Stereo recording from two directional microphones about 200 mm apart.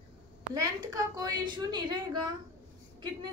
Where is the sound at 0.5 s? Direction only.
15° right (ahead or behind).